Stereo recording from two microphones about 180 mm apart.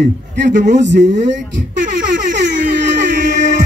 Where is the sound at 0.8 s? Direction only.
80° right.